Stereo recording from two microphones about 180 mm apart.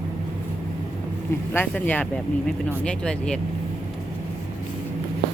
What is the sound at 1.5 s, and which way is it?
Speech, 10° left (ahead or behind).